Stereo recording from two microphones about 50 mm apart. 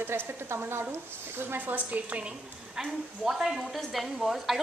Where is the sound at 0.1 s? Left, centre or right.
Right.